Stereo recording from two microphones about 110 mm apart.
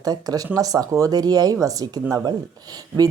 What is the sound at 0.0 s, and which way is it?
Speech, 35° right (ahead or behind).